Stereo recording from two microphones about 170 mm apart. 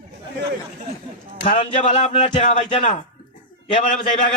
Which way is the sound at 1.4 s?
45° left (ahead or behind).